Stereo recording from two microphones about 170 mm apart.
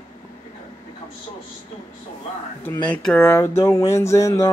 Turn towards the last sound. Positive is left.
turn(degrees=15)  # may be behind; listen again after turning